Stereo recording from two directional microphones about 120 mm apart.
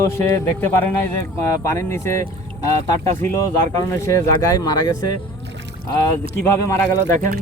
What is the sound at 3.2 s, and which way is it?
Speech, 20° left (ahead or behind).